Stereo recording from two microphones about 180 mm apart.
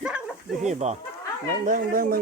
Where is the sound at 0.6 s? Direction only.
40° right (ahead or behind).